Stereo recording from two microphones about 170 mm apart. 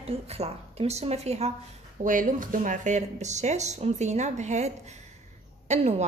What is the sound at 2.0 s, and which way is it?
A woman's voice, 50° right (ahead or behind).